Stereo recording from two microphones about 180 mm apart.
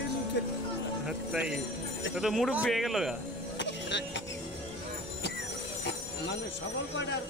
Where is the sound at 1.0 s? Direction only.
5° right (ahead or behind).